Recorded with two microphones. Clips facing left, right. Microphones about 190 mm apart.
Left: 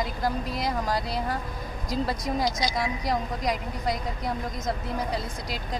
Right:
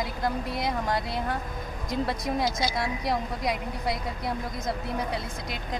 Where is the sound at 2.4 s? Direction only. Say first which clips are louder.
Left 1 dB; 5° right (ahead or behind).